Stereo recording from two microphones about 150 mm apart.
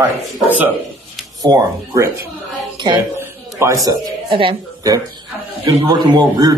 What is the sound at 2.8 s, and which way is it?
A woman's voice, 30° right (ahead or behind).